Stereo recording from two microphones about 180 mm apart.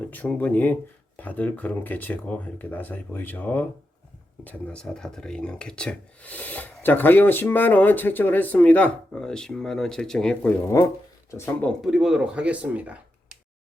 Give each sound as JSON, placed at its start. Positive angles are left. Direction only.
{"t": 0.1, "sound": "speech", "side_deg": 10}
{"t": 11.6, "sound": "speech", "side_deg": 0}